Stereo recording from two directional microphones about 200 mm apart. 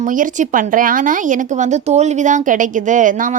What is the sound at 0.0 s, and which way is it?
A woman's voice, 40° right (ahead or behind).